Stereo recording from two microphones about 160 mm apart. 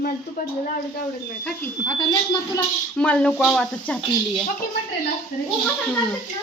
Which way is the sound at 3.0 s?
5° left (ahead or behind).